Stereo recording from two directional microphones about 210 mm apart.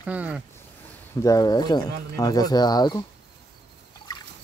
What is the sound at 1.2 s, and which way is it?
Speech, 15° left (ahead or behind).